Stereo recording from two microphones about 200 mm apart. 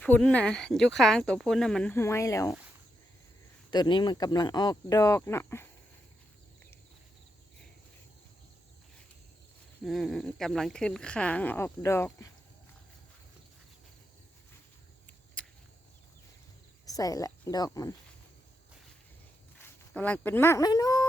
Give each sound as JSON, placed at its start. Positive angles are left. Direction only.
{"t": 0.0, "sound": "speech", "side_deg": 5}
{"t": 3.7, "sound": "speech", "side_deg": 20}
{"t": 9.8, "sound": "speech", "side_deg": 0}
{"t": 15.4, "sound": "a sound", "side_deg": 5}
{"t": 16.8, "sound": "speech", "side_deg": 15}
{"t": 19.5, "sound": "speech", "side_deg": 10}